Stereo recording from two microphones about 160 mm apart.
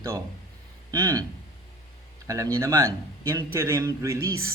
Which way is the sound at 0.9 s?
20° right (ahead or behind).